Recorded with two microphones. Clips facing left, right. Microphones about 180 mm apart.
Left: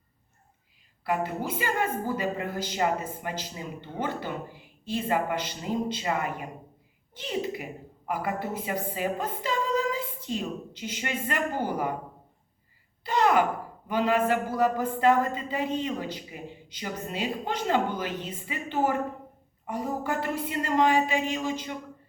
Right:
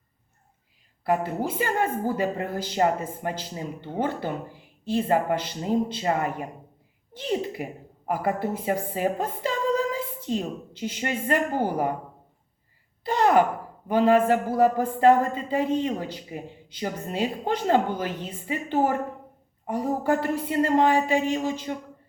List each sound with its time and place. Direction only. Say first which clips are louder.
1.0 s a woman's voice: right 4 dB; 40° right (ahead or behind)
4.9 s a woman's voice: right 4 dB; 40° right (ahead or behind)
13.1 s a woman's voice: right 3 dB; 40° right (ahead or behind)